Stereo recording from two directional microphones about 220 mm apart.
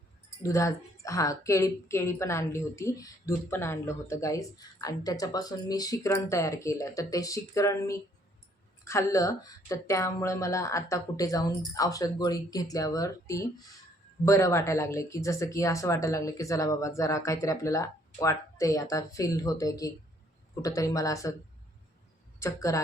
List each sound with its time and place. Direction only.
0.4 s a woman's voice: 15° left (ahead or behind)
22.4 s speech: 15° left (ahead or behind)